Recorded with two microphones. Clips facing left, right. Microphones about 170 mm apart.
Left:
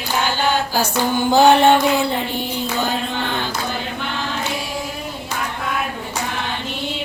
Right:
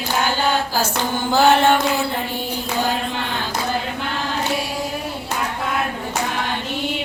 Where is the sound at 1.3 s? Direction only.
15° left (ahead or behind).